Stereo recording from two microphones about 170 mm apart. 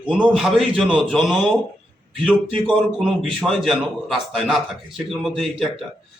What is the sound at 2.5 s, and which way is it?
Speech, 30° right (ahead or behind).